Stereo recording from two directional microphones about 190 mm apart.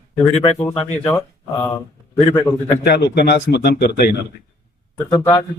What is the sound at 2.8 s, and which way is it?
Speech, 60° left (ahead or behind).